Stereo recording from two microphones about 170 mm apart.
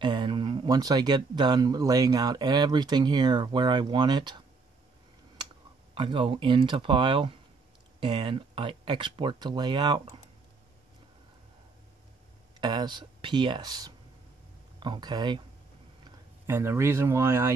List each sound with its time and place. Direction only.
0.0 s speech: 30° right (ahead or behind)
5.9 s speech: 30° right (ahead or behind)
12.5 s speech: 25° right (ahead or behind)
16.4 s speech: 15° right (ahead or behind)